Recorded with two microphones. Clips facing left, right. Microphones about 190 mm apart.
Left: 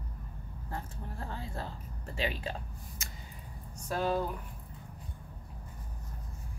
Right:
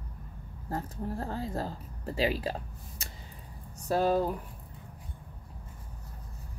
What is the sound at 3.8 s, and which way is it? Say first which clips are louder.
Speech: right 5 dB; 35° right (ahead or behind).